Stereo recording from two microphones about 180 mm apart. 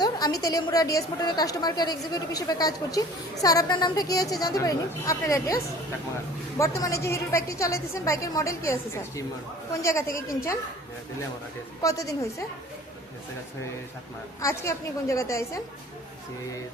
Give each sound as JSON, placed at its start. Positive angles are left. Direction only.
{"t": 0.0, "sound": "a sound", "side_deg": 20}
{"t": 0.4, "sound": "a woman's voice", "side_deg": 20}
{"t": 6.6, "sound": "a woman's voice", "side_deg": 15}
{"t": 11.8, "sound": "a woman's voice", "side_deg": 20}
{"t": 14.4, "sound": "a woman's voice", "side_deg": 15}